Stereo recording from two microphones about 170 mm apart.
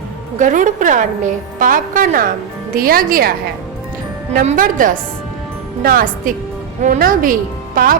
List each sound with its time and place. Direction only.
0.3 s a woman's voice: 50° right (ahead or behind)
4.4 s a woman's voice: 50° right (ahead or behind)